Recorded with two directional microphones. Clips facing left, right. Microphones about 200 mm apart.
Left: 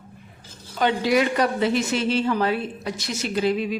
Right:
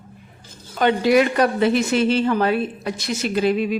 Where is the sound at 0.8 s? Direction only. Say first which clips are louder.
Right 4 dB; 55° right (ahead or behind).